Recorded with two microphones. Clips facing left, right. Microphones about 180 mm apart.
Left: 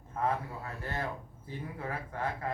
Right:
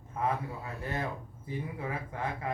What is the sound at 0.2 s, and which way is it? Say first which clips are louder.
A man's voice: even; 15° right (ahead or behind).